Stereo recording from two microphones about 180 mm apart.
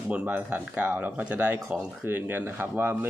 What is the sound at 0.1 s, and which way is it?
Speech, 10° right (ahead or behind).